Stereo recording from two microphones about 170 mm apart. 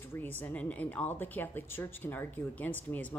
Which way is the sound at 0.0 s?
15° left (ahead or behind).